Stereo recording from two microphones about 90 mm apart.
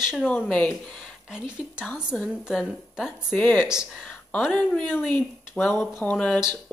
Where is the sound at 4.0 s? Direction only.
15° left (ahead or behind).